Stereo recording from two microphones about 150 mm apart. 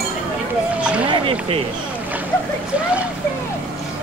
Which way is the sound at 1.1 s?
40° right (ahead or behind).